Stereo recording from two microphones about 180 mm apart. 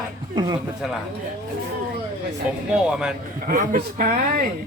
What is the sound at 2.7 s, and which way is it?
Speech, 5° right (ahead or behind).